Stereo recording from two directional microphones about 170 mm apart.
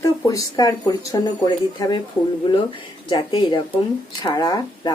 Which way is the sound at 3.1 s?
25° left (ahead or behind).